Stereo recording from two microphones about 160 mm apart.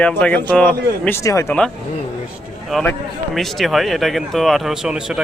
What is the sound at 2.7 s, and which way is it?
A man's voice, 5° left (ahead or behind).